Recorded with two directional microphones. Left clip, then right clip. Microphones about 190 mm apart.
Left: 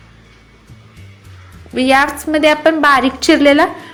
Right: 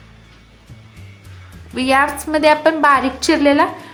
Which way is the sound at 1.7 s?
15° left (ahead or behind).